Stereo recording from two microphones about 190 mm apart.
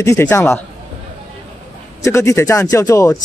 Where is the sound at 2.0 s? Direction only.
15° left (ahead or behind).